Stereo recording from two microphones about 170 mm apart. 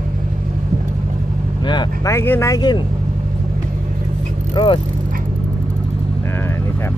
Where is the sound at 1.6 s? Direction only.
25° left (ahead or behind).